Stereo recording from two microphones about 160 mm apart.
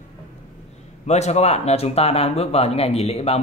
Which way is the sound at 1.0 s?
45° left (ahead or behind).